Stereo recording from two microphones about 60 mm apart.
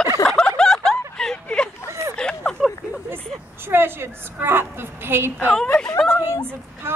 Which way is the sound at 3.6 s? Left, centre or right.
Right.